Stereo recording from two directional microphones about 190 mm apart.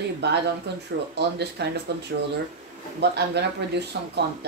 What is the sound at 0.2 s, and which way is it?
Speech, 65° right (ahead or behind).